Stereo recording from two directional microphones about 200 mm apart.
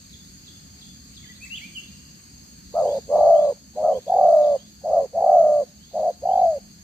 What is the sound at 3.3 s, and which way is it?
Bird, 5° left (ahead or behind).